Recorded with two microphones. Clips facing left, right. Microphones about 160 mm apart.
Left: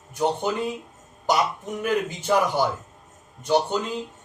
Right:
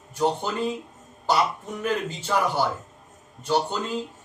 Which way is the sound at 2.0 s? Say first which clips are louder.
Left 3 dB; 15° left (ahead or behind).